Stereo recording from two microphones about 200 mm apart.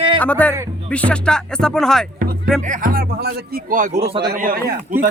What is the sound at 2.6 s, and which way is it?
A man's voice, 40° right (ahead or behind).